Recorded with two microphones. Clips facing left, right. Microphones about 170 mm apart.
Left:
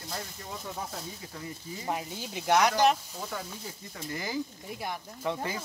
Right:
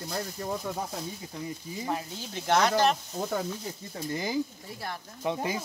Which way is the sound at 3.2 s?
45° right (ahead or behind).